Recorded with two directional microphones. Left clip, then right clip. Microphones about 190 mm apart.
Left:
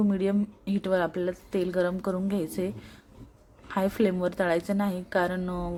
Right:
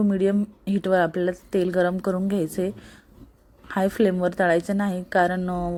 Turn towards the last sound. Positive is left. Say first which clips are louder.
# right 6 dB
turn(degrees=-15)  # may be behind; listen again after turning